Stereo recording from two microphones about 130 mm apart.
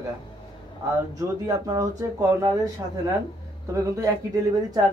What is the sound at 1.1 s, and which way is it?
Speech, 25° right (ahead or behind).